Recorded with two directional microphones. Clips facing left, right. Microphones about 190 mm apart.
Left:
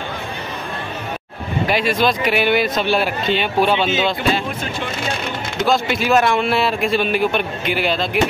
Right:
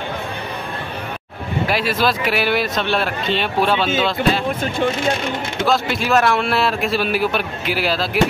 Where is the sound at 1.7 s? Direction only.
5° right (ahead or behind).